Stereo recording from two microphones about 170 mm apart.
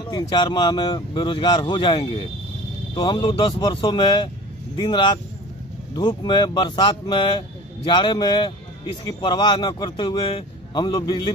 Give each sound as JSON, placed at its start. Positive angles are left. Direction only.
{"t": 0.0, "sound": "a man's voice", "side_deg": 25}